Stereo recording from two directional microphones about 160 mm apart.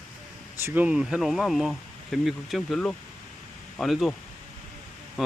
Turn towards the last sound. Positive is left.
turn(degrees=0)  # may be behind; listen again after turning